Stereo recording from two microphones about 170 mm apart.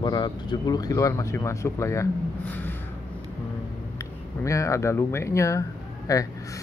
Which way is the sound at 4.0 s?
20° left (ahead or behind).